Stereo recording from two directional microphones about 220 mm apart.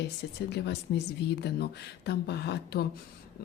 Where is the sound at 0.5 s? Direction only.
50° left (ahead or behind).